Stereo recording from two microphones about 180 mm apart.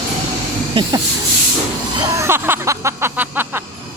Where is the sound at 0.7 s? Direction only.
25° right (ahead or behind).